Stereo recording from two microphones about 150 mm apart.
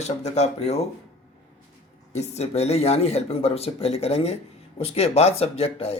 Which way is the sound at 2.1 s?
45° left (ahead or behind).